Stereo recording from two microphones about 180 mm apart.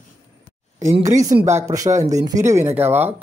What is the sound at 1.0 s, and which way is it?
A woman's voice, 20° right (ahead or behind).